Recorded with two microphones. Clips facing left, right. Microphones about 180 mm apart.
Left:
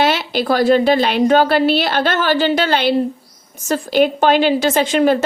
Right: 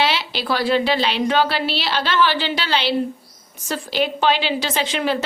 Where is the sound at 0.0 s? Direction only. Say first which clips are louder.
Left 5 dB; 50° left (ahead or behind).